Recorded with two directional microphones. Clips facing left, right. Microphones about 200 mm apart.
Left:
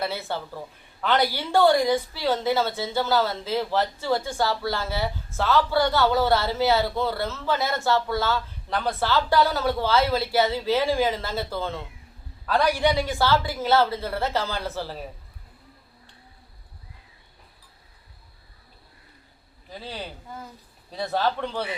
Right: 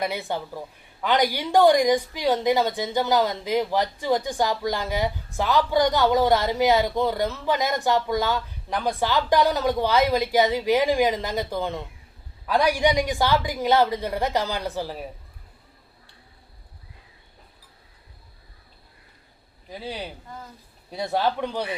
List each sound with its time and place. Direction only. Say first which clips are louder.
0.0 s a woman's voice: right 2 dB; 15° right (ahead or behind)
19.7 s a woman's voice: right 3 dB; 10° right (ahead or behind)